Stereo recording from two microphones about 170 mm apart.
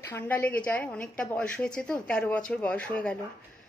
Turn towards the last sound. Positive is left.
turn(degrees=5)  # may be behind; listen again after turning